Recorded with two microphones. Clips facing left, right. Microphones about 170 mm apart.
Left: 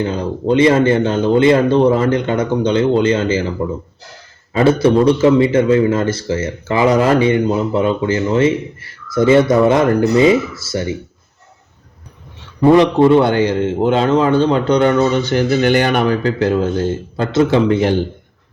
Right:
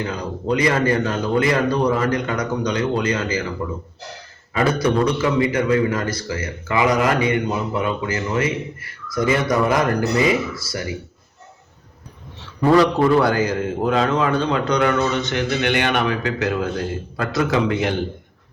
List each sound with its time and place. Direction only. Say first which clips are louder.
0.0 s a man's voice: left 7 dB; 25° left (ahead or behind)
4.5 s a man's voice: left 7 dB; 25° left (ahead or behind)
12.6 s a man's voice: left 5 dB; 20° left (ahead or behind)